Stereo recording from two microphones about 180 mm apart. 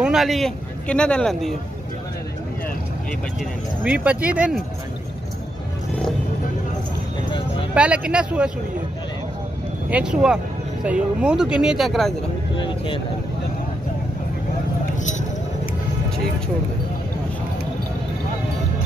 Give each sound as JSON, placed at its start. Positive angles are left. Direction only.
{"t": 0.0, "sound": "a man's voice", "side_deg": 0}
{"t": 3.8, "sound": "speech", "side_deg": -5}
{"t": 7.7, "sound": "speech", "side_deg": -5}
{"t": 9.8, "sound": "speech", "side_deg": -5}
{"t": 12.6, "sound": "vehicle", "side_deg": 25}
{"t": 15.0, "sound": "a sound", "side_deg": 40}